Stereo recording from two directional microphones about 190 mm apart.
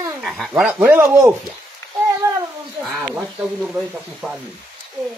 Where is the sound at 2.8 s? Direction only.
5° right (ahead or behind).